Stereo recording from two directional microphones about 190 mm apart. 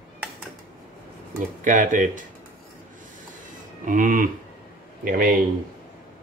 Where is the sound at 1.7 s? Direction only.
45° right (ahead or behind).